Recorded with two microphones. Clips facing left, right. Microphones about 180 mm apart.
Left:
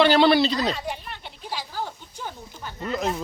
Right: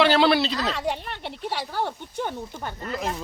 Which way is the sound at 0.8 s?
70° right (ahead or behind).